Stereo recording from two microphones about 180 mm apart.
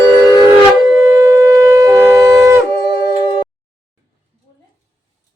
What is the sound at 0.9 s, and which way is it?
Shofar, 15° right (ahead or behind).